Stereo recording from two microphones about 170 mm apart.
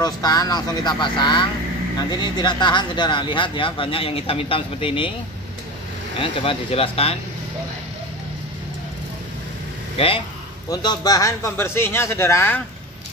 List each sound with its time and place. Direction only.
0.0 s speech: 20° left (ahead or behind)
6.1 s speech: 35° left (ahead or behind)
9.9 s speech: 30° left (ahead or behind); by 12.6 s 15° left (ahead or behind)